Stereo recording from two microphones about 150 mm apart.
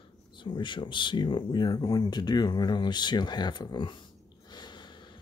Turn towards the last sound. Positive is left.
turn(degrees=30)  # may be behind; listen again after turning